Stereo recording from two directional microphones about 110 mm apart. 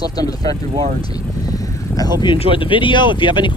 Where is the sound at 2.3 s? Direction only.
55° left (ahead or behind).